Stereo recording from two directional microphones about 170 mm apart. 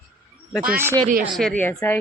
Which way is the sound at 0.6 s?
15° right (ahead or behind).